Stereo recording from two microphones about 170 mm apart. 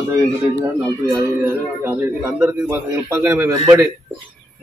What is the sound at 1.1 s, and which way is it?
A man's voice, 15° right (ahead or behind).